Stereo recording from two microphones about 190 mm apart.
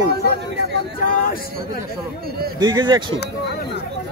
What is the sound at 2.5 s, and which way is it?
Speech, 25° right (ahead or behind).